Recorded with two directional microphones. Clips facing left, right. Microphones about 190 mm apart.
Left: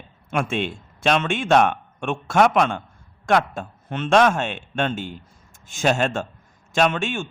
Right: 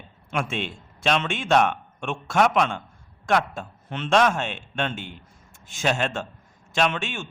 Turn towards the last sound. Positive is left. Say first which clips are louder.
# left 4 dB
turn(degrees=50)  # may be behind; listen again after turning